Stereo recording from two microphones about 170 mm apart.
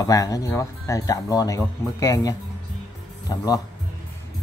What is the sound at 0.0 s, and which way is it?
Speech, 20° left (ahead or behind).